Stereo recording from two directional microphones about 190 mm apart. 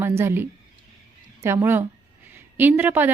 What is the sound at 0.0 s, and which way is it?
A woman's voice, 15° right (ahead or behind).